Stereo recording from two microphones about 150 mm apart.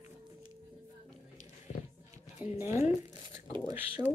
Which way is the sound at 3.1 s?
30° right (ahead or behind).